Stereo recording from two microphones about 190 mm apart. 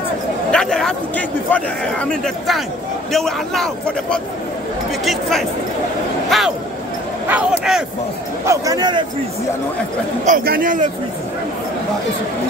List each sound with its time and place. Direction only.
0.5 s a man's voice: 5° left (ahead or behind)
6.3 s a man's voice: centre (ahead or behind)
7.2 s a sound: 5° right (ahead or behind)
8.5 s speech: 20° right (ahead or behind)
10.2 s a man's voice: 50° right (ahead or behind)